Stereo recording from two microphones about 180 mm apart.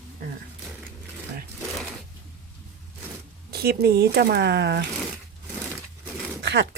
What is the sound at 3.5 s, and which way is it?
Speech, 60° right (ahead or behind).